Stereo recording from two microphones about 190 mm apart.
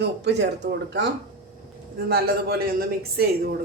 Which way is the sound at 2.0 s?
55° right (ahead or behind).